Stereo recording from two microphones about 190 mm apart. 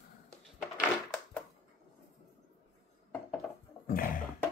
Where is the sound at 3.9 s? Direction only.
45° left (ahead or behind).